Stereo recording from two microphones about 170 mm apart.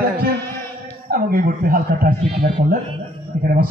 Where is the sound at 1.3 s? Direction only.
55° right (ahead or behind).